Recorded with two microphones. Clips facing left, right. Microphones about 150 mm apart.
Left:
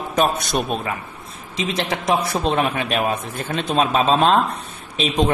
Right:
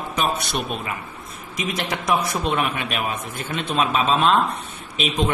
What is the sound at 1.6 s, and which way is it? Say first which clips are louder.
A man's voice: left 3 dB; 25° left (ahead or behind).